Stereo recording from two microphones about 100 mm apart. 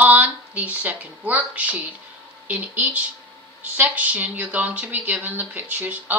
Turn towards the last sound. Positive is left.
turn(degrees=-15)  # may be behind; listen again after turning